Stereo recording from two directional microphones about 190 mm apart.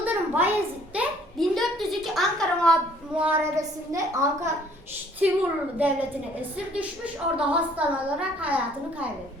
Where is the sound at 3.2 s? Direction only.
10° right (ahead or behind).